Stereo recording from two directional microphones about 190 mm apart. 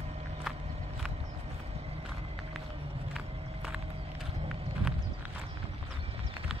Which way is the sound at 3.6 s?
Centre (ahead or behind).